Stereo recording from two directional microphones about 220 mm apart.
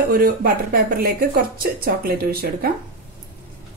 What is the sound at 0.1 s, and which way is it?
Speech, 40° right (ahead or behind).